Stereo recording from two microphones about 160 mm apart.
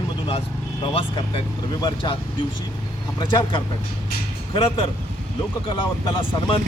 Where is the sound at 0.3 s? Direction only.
35° left (ahead or behind).